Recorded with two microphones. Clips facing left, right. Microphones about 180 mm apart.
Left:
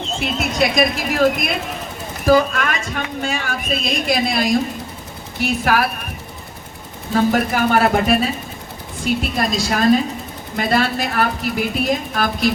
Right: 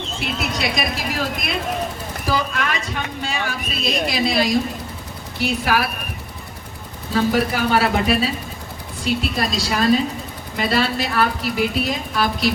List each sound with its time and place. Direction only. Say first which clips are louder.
0.3 s speech: left 7 dB; 50° left (ahead or behind)
7.1 s speech: left 2 dB; 50° left (ahead or behind)